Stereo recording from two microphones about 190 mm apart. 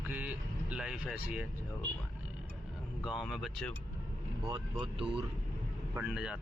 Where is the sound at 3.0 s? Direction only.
Centre (ahead or behind).